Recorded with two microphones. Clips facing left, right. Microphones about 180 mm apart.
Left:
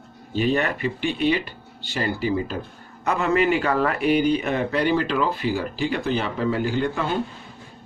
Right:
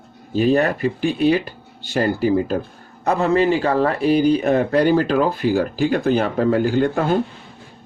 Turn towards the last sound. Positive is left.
turn(degrees=-45)  # may be behind; listen again after turning